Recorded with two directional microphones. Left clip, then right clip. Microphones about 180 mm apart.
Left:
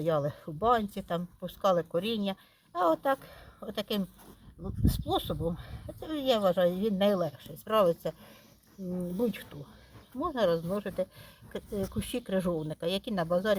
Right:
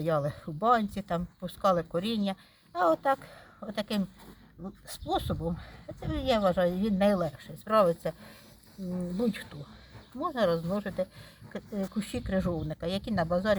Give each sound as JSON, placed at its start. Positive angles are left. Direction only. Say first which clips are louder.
{"t": 0.0, "sound": "speech", "louder": "even", "side_deg": 35}
{"t": 8.8, "sound": "speech", "louder": "even", "side_deg": 20}
{"t": 9.1, "sound": "speech", "louder": "even", "side_deg": 40}
{"t": 11.9, "sound": "speech", "louder": "right 1 dB", "side_deg": 50}
{"t": 12.5, "sound": "speech", "louder": "left 2 dB", "side_deg": 40}
{"t": 12.7, "sound": "speech", "louder": "even", "side_deg": 50}